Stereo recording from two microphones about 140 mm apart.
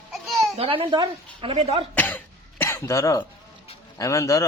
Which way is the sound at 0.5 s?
45° right (ahead or behind).